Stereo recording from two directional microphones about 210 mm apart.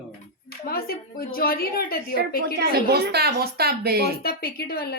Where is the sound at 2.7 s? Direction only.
50° right (ahead or behind).